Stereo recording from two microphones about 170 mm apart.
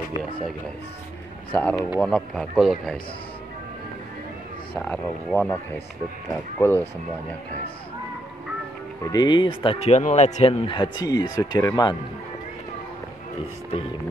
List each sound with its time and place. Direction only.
1.5 s speech: 10° left (ahead or behind)
4.8 s speech: 5° left (ahead or behind)
6.6 s speech: 15° left (ahead or behind)
9.0 s speech: 25° left (ahead or behind)